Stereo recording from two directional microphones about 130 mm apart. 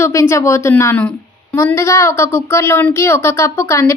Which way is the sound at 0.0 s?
20° left (ahead or behind).